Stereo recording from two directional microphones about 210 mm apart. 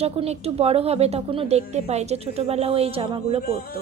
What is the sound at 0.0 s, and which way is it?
A woman's voice, 30° right (ahead or behind).